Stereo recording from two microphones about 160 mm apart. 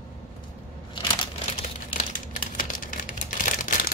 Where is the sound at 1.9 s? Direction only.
60° left (ahead or behind).